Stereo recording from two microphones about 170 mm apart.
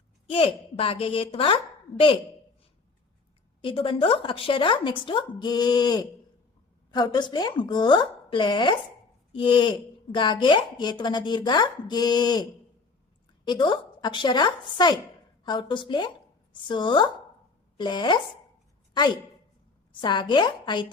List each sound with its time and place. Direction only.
0.3 s a woman's voice: 35° left (ahead or behind)
3.6 s speech: 30° left (ahead or behind)
20.0 s speech: 25° left (ahead or behind)